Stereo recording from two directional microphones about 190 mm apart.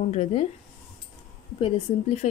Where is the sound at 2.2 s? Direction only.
35° left (ahead or behind).